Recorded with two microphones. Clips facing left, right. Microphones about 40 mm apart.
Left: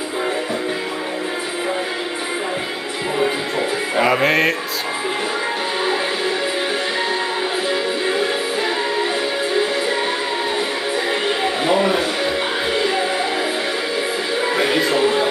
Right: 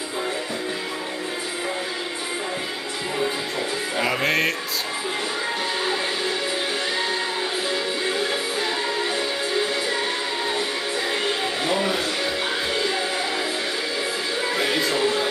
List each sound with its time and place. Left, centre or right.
4.0 s music: centre
11.2 s music: left
14.4 s music: centre